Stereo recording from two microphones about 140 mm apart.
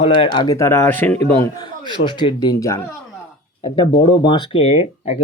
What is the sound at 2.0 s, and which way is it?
Speech, 35° left (ahead or behind).